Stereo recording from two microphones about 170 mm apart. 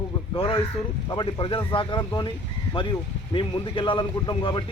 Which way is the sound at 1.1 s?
30° left (ahead or behind).